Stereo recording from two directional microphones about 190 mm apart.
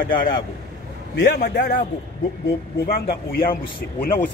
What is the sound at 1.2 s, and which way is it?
Speech, 55° left (ahead or behind).